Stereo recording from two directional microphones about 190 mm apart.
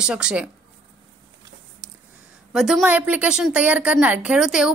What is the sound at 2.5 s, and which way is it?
A woman's voice, centre (ahead or behind).